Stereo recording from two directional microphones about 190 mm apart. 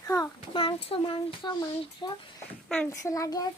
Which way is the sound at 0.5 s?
30° left (ahead or behind).